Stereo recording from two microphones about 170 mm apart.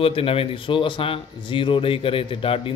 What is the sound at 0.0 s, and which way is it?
A man's voice, 35° left (ahead or behind).